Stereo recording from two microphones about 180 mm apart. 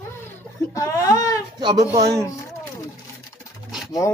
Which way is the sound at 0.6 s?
15° left (ahead or behind).